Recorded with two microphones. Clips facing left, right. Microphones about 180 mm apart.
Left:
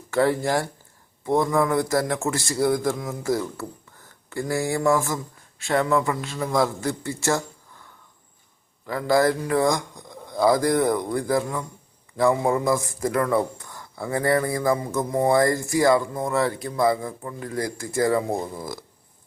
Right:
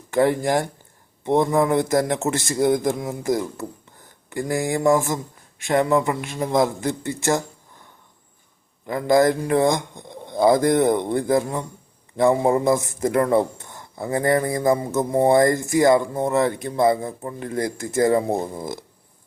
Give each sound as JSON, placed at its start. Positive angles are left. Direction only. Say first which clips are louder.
{"t": 0.1, "sound": "a man's voice", "louder": "right 2 dB", "side_deg": -15}
{"t": 8.9, "sound": "a man's voice", "louder": "right 3 dB", "side_deg": -20}